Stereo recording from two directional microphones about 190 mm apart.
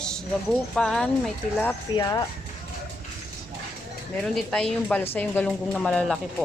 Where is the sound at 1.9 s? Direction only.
20° left (ahead or behind).